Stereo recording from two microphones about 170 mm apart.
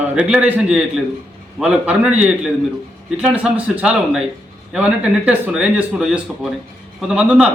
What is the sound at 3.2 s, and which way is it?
A man's voice, 5° right (ahead or behind).